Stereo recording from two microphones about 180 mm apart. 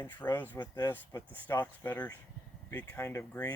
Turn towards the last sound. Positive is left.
turn(degrees=15)  # may be behind; listen again after turning